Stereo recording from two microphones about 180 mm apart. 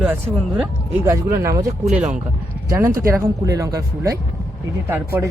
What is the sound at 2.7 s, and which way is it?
Speech, 15° right (ahead or behind).